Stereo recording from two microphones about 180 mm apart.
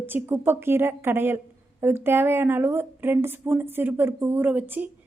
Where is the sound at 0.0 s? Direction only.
10° right (ahead or behind).